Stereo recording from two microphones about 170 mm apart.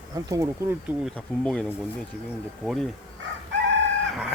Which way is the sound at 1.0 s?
5° left (ahead or behind).